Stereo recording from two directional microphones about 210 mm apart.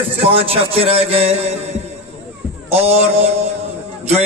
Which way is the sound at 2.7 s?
30° right (ahead or behind).